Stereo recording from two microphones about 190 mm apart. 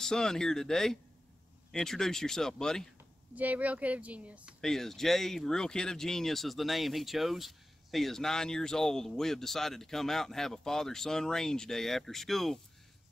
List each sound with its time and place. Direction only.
0.0 s speech: 5° left (ahead or behind)
3.3 s speech: 10° right (ahead or behind)